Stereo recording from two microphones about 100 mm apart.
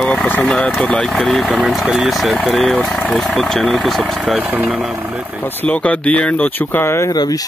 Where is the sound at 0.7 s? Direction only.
10° left (ahead or behind).